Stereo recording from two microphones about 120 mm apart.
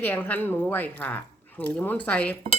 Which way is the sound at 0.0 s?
15° left (ahead or behind).